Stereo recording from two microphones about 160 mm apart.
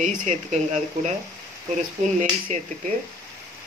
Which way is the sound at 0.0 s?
55° right (ahead or behind).